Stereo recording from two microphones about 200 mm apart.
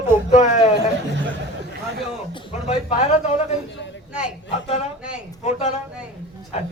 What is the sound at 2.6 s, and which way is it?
Speech, 35° left (ahead or behind).